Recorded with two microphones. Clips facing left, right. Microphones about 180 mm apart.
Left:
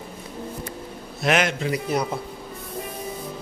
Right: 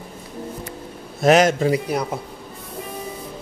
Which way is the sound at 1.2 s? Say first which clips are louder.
Right 7 dB; 40° right (ahead or behind).